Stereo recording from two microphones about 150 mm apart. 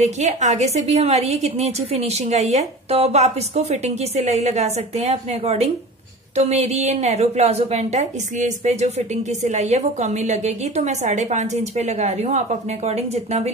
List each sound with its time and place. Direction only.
0.0 s a woman's voice: 50° right (ahead or behind)